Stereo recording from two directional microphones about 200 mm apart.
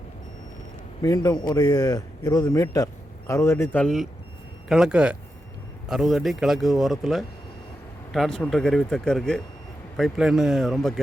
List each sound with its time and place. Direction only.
1.0 s a man's voice: 20° left (ahead or behind); by 11.0 s centre (ahead or behind)